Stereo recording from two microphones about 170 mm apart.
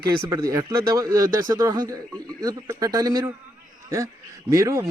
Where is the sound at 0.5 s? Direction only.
20° right (ahead or behind).